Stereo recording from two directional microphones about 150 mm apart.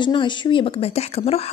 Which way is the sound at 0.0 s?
30° left (ahead or behind).